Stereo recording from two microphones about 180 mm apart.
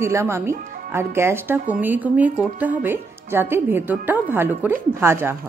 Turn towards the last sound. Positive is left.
turn(degrees=-15)  # may be behind; listen again after turning